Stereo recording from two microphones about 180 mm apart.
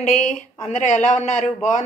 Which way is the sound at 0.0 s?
45° left (ahead or behind).